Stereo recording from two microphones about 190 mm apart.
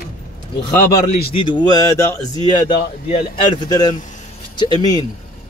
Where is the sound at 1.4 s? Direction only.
25° left (ahead or behind).